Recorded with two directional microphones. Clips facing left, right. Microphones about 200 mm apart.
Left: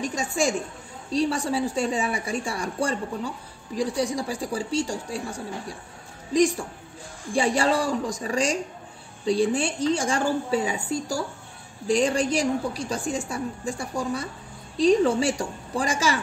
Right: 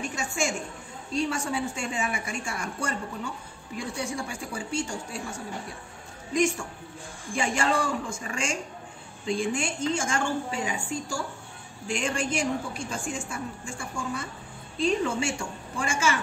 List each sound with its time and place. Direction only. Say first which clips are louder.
0.0 s a woman's voice: left 5 dB; 35° left (ahead or behind)